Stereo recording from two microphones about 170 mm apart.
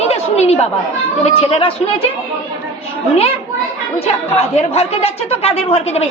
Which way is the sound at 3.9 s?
35° left (ahead or behind).